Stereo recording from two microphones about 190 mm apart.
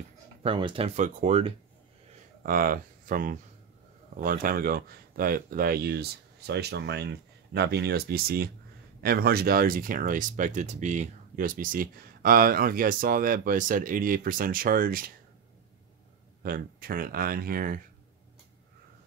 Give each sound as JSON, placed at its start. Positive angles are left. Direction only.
{"t": 0.4, "sound": "speech", "side_deg": -30}
{"t": 2.4, "sound": "speech", "side_deg": -50}
{"t": 16.4, "sound": "speech", "side_deg": -50}